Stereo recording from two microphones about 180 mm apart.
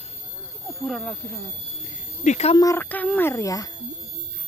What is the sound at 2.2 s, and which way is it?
Speech, 40° left (ahead or behind).